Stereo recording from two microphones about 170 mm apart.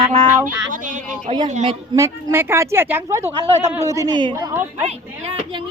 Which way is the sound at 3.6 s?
40° right (ahead or behind).